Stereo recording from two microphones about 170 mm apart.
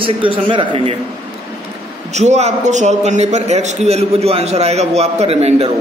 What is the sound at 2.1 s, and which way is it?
A man's voice, 40° right (ahead or behind).